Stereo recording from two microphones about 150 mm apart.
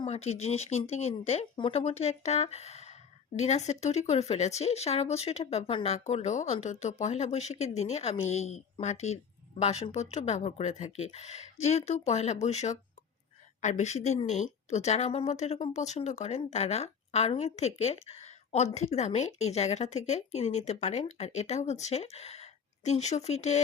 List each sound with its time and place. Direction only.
0.0 s a woman's voice: 45° left (ahead or behind)